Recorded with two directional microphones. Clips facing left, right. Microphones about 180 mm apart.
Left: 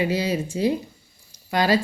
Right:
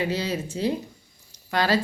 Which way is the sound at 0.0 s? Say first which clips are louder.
Left 3 dB; 10° left (ahead or behind).